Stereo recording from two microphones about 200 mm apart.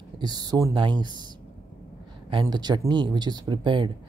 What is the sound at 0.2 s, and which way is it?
Speech, 20° right (ahead or behind).